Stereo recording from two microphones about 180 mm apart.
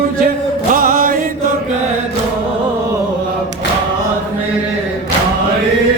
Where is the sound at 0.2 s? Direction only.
50° right (ahead or behind).